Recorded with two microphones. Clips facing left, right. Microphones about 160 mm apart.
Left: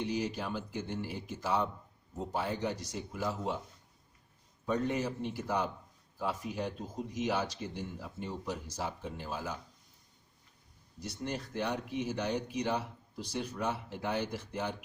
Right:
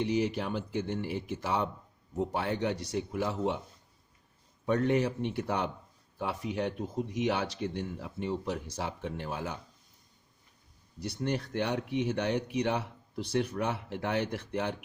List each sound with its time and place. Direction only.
0.0 s speech: 65° right (ahead or behind)
4.6 s speech: 65° right (ahead or behind)
11.0 s speech: 65° right (ahead or behind)